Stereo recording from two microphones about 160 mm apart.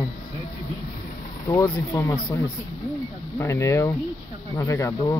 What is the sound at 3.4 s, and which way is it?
Speech, 15° left (ahead or behind).